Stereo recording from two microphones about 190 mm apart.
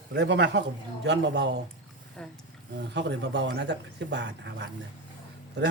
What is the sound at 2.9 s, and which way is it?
Speech, 65° right (ahead or behind).